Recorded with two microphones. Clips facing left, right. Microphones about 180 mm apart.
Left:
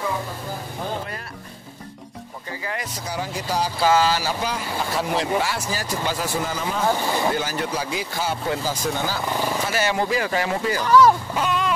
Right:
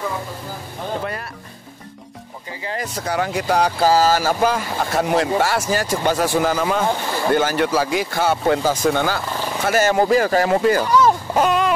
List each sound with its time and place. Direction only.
2.6 s speech: 30° right (ahead or behind)
3.0 s speech: 60° right (ahead or behind)
3.8 s speech: 40° right (ahead or behind)
5.6 s speech: 75° right (ahead or behind)
9.7 s speech: 45° right (ahead or behind)
10.9 s speech: 20° right (ahead or behind)
11.3 s a sound: 50° right (ahead or behind)